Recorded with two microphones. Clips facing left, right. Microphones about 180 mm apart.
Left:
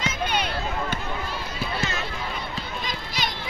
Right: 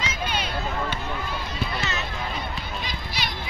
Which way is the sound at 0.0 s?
55° left (ahead or behind).